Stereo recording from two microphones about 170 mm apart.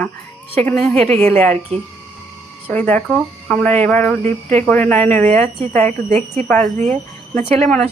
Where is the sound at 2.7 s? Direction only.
10° left (ahead or behind).